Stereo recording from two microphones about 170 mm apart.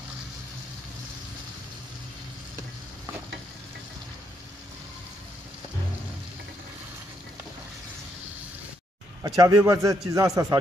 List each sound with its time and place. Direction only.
9.2 s a man's voice: 20° right (ahead or behind)